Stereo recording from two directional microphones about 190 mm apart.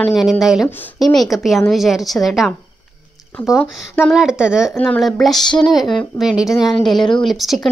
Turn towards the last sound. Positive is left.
turn(degrees=0)  # may be behind; listen again after turning